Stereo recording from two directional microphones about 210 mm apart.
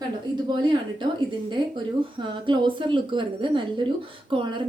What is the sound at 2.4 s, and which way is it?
A woman's voice, 25° right (ahead or behind).